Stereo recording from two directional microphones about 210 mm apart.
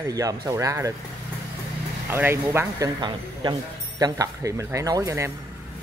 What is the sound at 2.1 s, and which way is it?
Speech, 10° right (ahead or behind).